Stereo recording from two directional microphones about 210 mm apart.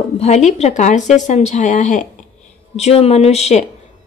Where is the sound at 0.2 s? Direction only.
35° left (ahead or behind).